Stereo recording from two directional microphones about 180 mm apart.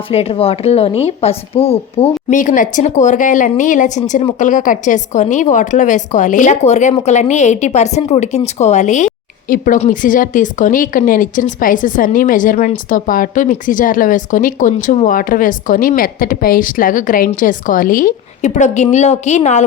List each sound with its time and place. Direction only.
0.1 s speech: 35° left (ahead or behind)
2.4 s a woman's voice: 45° left (ahead or behind)